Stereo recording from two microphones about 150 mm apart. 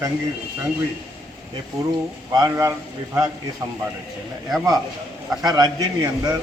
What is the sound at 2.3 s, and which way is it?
Speech, 20° right (ahead or behind).